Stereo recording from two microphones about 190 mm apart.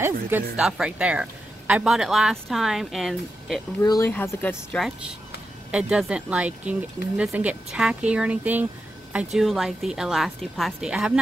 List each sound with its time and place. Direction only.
0.0 s speech: 5° right (ahead or behind)
3.8 s speech: 20° left (ahead or behind)
4.1 s speech: 10° left (ahead or behind)
5.7 s speech: 5° right (ahead or behind)